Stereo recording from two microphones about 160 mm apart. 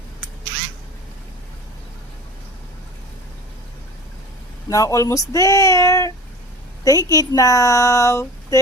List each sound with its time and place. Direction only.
4.7 s a woman's voice: 20° left (ahead or behind)